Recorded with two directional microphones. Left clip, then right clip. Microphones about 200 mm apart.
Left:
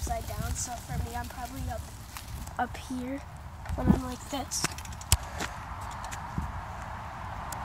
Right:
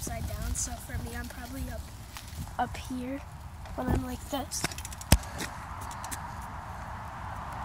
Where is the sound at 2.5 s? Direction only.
5° left (ahead or behind).